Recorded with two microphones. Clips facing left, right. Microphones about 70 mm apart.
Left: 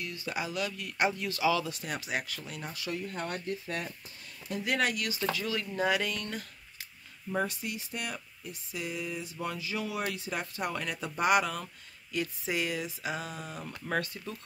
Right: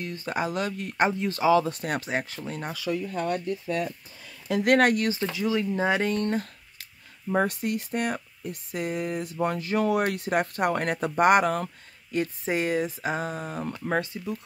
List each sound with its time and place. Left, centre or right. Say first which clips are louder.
0.0 s speech: right 6 dB; right
2.0 s speech: right 5 dB; right
4.5 s speech: right 11 dB; right
4.7 s speech: right 8 dB; right
5.3 s speech: right 8 dB; right
7.2 s speech: right 7 dB; right; by 14.4 s centre